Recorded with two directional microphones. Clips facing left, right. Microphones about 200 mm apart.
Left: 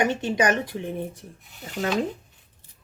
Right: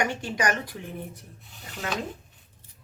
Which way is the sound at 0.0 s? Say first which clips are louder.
Left 5 dB; 20° left (ahead or behind).